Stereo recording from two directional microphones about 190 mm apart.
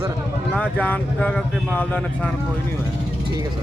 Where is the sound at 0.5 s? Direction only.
5° left (ahead or behind).